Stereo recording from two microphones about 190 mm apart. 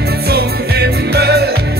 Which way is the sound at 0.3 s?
60° right (ahead or behind).